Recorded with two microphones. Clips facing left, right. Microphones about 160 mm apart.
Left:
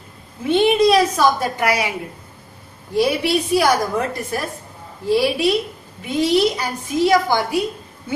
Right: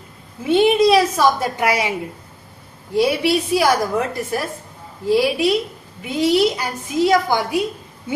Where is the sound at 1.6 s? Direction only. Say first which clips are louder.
Right 1 dB; 25° right (ahead or behind).